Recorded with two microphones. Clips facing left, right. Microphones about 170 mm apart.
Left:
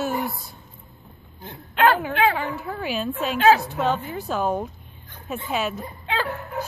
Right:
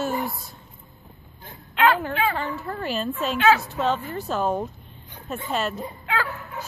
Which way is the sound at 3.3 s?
35° left (ahead or behind).